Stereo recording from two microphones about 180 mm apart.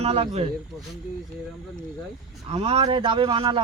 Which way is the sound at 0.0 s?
35° right (ahead or behind).